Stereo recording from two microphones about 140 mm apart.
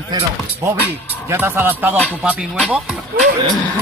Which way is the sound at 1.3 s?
15° right (ahead or behind).